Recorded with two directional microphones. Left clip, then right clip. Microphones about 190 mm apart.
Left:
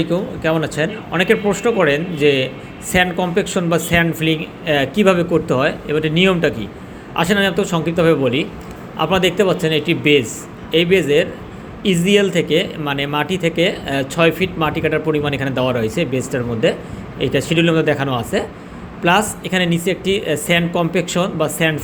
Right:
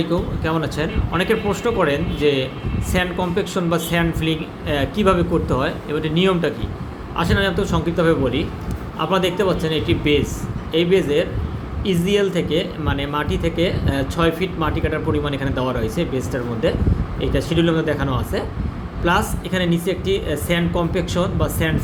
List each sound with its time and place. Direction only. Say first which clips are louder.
0.0 s speech: left 3 dB; 10° left (ahead or behind)